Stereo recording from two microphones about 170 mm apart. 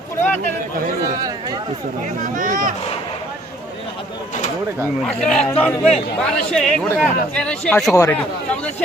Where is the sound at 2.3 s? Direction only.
50° right (ahead or behind).